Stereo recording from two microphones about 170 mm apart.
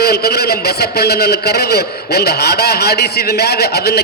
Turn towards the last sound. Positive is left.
turn(degrees=70)  # may be behind; listen again after turning